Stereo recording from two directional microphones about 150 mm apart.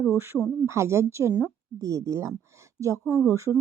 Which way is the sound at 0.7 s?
20° right (ahead or behind).